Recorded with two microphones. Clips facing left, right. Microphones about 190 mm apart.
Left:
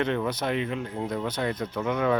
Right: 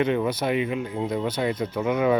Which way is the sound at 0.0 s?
10° right (ahead or behind).